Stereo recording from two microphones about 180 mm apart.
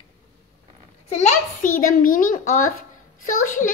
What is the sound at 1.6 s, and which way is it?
A child's voice, 50° left (ahead or behind).